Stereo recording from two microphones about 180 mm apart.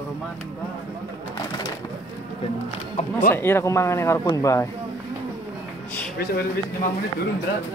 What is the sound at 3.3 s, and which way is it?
Speech, 15° left (ahead or behind).